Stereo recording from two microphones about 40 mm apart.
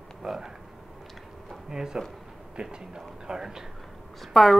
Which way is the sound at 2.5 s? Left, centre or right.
Centre.